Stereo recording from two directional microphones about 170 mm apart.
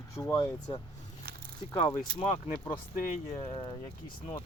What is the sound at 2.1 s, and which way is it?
Speech, 35° left (ahead or behind).